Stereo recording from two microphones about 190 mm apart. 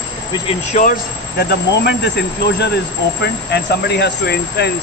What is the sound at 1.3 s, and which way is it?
Speech, 60° left (ahead or behind).